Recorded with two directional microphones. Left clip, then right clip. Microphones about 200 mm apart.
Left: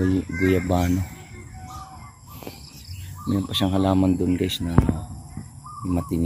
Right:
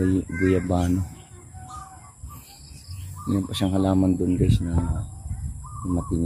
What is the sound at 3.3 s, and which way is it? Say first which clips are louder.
Speech: left 2 dB; centre (ahead or behind).